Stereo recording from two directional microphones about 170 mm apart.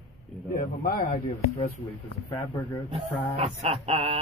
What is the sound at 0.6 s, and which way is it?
Speech, 55° left (ahead or behind).